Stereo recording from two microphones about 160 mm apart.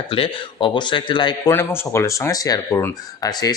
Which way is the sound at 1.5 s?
15° left (ahead or behind).